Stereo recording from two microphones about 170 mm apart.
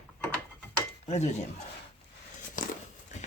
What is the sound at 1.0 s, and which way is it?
Speech, 40° left (ahead or behind).